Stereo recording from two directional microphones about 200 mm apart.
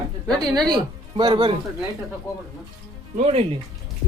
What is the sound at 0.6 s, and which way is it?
Speech, 20° right (ahead or behind).